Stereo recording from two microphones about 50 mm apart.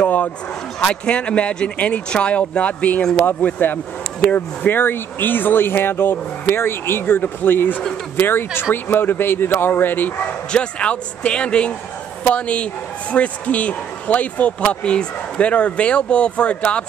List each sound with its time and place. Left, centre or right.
0.0 s a sound: left
0.8 s speech: left
3.0 s speech: centre
3.3 s speech: left
4.6 s speech: left
10.5 s speech: left